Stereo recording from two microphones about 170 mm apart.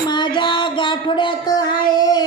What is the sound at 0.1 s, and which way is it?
Music, 25° left (ahead or behind).